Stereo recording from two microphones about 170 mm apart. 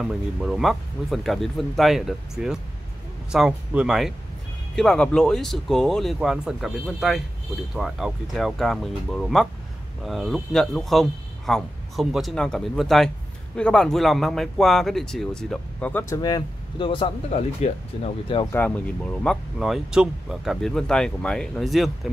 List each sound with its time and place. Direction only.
0.0 s speech: 5° right (ahead or behind)
16.2 s speech: 25° left (ahead or behind)
18.5 s speech: 10° left (ahead or behind)